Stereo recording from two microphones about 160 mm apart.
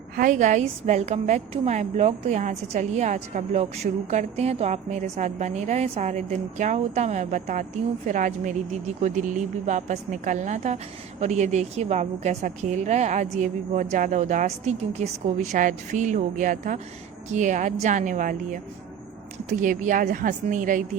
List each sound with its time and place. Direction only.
0.2 s a woman's voice: 55° right (ahead or behind)